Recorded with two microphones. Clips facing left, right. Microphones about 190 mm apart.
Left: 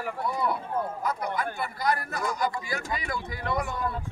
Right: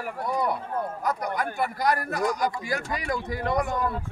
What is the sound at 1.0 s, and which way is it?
Speech, 45° right (ahead or behind).